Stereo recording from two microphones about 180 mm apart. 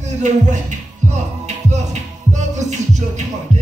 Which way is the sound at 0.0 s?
40° right (ahead or behind).